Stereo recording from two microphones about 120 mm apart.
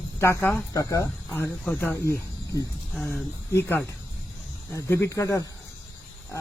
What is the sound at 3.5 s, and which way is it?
Speech, 20° left (ahead or behind).